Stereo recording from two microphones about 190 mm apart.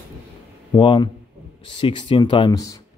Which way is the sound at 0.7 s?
25° left (ahead or behind).